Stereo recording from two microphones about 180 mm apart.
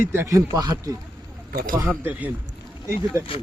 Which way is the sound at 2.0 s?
10° right (ahead or behind).